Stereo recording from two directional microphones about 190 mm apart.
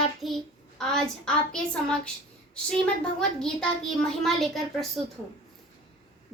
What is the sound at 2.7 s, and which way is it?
Child singing, 5° left (ahead or behind).